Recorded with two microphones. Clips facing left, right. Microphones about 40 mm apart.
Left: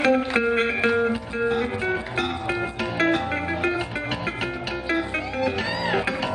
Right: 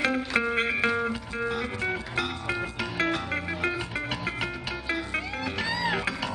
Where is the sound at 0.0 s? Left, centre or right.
Centre.